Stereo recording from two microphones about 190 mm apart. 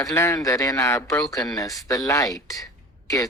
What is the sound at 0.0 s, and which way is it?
A man's voice, 15° left (ahead or behind).